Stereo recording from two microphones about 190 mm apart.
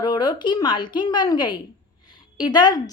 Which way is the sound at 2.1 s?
25° left (ahead or behind).